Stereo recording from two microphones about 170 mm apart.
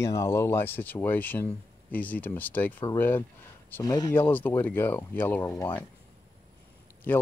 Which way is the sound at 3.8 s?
25° left (ahead or behind).